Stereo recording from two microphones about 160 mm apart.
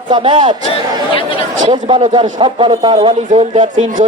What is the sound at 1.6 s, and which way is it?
A man's voice, 25° right (ahead or behind).